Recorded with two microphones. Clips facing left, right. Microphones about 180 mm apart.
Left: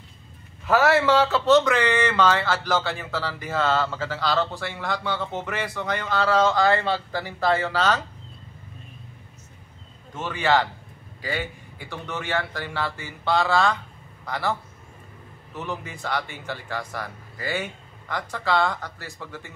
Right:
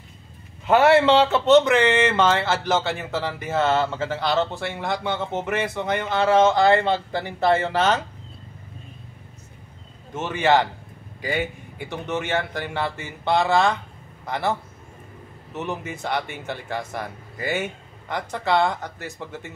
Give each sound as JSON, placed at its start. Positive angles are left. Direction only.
{"t": 0.7, "sound": "speech", "side_deg": -30}
{"t": 10.1, "sound": "speech", "side_deg": -20}
{"t": 11.9, "sound": "speech", "side_deg": -20}